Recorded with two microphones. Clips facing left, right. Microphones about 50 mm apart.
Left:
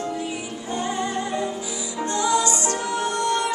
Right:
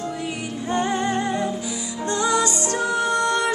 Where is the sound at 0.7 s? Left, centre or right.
Right.